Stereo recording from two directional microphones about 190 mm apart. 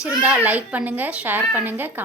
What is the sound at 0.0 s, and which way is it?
Speech, 10° right (ahead or behind).